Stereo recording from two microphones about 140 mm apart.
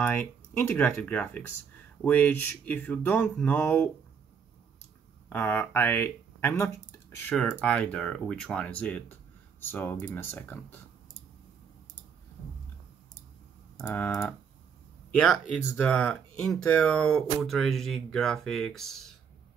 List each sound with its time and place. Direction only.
0.0 s speech: 15° left (ahead or behind)
5.3 s speech: 15° left (ahead or behind)
13.8 s speech: 15° left (ahead or behind)